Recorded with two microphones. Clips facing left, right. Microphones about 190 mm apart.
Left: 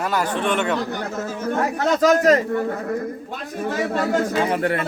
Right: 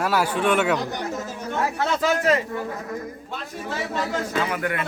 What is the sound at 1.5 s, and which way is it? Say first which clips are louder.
Speech: left 4 dB; 45° left (ahead or behind).